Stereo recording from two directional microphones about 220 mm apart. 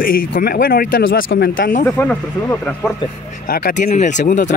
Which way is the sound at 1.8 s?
10° left (ahead or behind).